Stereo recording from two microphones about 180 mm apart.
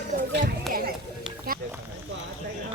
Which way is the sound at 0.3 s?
60° right (ahead or behind).